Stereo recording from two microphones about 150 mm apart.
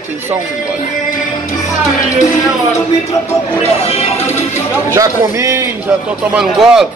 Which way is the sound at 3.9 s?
40° left (ahead or behind).